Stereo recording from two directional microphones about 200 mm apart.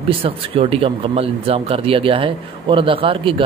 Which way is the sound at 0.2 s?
30° right (ahead or behind).